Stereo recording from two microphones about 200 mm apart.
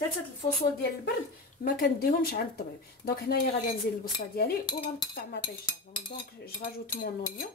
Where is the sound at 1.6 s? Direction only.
50° left (ahead or behind).